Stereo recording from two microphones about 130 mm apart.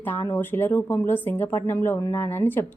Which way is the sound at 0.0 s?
15° left (ahead or behind).